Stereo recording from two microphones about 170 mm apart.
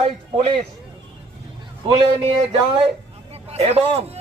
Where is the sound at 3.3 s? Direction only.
40° right (ahead or behind).